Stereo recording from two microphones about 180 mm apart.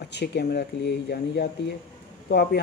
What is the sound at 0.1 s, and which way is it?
Speech, 65° left (ahead or behind).